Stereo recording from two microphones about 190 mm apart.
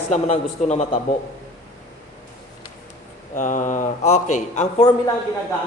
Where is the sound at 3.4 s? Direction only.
45° left (ahead or behind).